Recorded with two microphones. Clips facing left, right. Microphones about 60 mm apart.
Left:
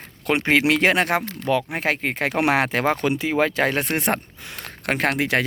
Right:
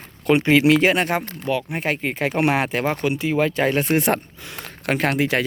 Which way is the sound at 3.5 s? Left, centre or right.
Left.